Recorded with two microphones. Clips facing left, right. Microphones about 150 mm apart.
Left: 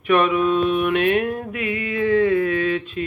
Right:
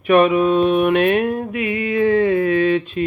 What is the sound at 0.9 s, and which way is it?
Mantra, 35° right (ahead or behind).